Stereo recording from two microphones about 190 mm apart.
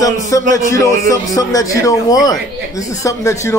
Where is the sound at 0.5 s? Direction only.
15° left (ahead or behind).